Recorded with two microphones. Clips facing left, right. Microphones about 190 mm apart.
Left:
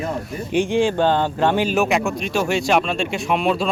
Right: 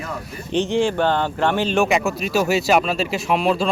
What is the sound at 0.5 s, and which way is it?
Speech, 10° left (ahead or behind).